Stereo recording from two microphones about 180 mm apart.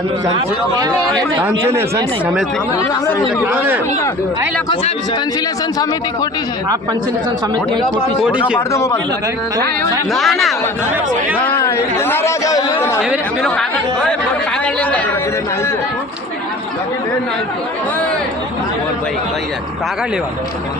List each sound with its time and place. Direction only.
1.5 s speech: 15° right (ahead or behind)
8.2 s speech: 5° right (ahead or behind)
8.5 s speech: 15° left (ahead or behind)
10.2 s speech: centre (ahead or behind)
11.4 s chatter: 15° left (ahead or behind)
13.0 s speech: centre (ahead or behind)